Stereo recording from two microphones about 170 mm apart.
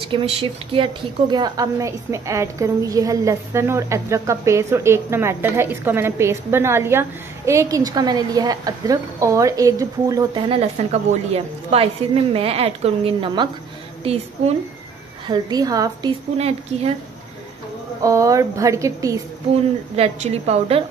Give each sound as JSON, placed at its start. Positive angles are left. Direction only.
{"t": 0.1, "sound": "a woman's voice", "side_deg": -30}
{"t": 10.5, "sound": "a woman's voice", "side_deg": -40}
{"t": 15.2, "sound": "a woman's voice", "side_deg": -25}
{"t": 16.3, "sound": "a woman's voice", "side_deg": -35}
{"t": 18.0, "sound": "a woman's voice", "side_deg": -20}
{"t": 20.0, "sound": "a woman's voice", "side_deg": -40}